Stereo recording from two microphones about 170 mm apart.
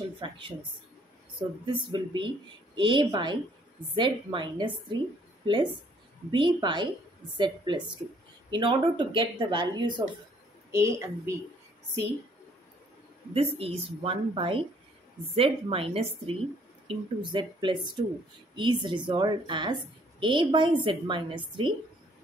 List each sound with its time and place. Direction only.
0.2 s a woman's voice: 30° right (ahead or behind)
1.7 s a woman's voice: 30° right (ahead or behind)
13.3 s a woman's voice: 35° right (ahead or behind)